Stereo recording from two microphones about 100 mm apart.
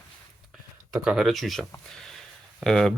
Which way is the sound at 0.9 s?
5° right (ahead or behind).